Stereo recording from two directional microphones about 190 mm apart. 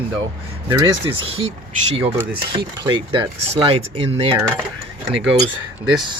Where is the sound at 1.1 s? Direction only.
30° right (ahead or behind).